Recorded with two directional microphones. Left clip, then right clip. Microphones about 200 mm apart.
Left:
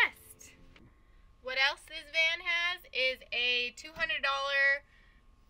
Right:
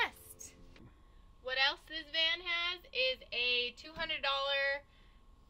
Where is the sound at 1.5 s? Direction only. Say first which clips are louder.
Left 3 dB; 15° left (ahead or behind).